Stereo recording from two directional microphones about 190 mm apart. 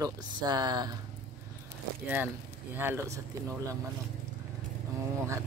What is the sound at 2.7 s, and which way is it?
Speech, 10° right (ahead or behind).